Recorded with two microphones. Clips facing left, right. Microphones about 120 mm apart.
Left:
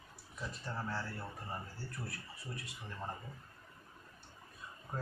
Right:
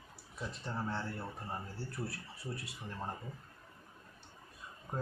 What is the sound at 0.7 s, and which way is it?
Speech, 20° right (ahead or behind).